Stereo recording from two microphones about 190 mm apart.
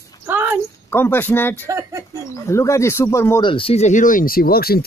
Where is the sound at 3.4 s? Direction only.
30° left (ahead or behind); by 4.8 s 50° left (ahead or behind).